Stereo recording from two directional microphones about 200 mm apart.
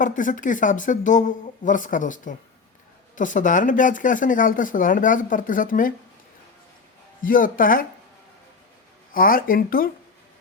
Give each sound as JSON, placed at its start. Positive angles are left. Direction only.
{"t": 0.0, "sound": "speech", "side_deg": 40}
{"t": 7.2, "sound": "speech", "side_deg": 45}
{"t": 9.1, "sound": "speech", "side_deg": 45}